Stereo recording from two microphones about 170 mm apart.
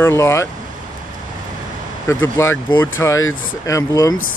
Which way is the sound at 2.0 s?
15° left (ahead or behind).